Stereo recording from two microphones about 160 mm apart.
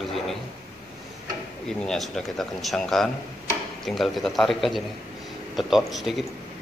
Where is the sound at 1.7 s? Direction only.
Centre (ahead or behind).